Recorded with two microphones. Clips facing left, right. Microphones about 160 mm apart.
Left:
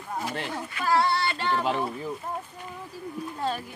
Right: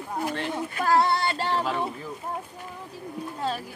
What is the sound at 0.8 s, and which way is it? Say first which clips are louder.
Female singing: right 2 dB; 45° right (ahead or behind).